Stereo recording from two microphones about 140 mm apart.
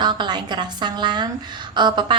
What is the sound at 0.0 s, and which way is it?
A woman's voice, 35° right (ahead or behind).